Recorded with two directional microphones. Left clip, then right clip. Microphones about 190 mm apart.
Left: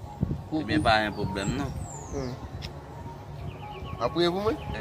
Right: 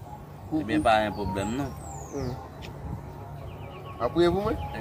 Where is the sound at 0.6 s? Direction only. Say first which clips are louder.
Right 1 dB; 10° right (ahead or behind).